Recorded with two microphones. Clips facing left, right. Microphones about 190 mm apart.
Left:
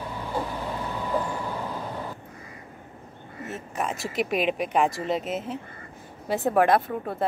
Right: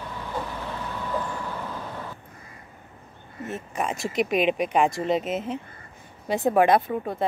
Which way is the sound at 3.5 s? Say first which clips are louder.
Right 1 dB; centre (ahead or behind).